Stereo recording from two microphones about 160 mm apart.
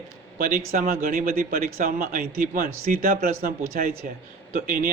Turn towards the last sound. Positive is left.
turn(degrees=-60)  # may be behind; listen again after turning